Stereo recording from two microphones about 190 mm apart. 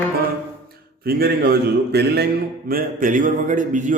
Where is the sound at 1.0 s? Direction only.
55° right (ahead or behind).